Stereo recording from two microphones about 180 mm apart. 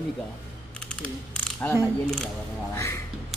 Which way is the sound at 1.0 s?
10° left (ahead or behind).